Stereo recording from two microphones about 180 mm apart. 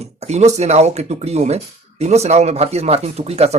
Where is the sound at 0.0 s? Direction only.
35° right (ahead or behind).